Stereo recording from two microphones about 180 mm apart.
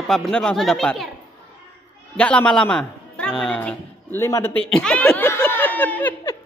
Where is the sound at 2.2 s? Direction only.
5° left (ahead or behind).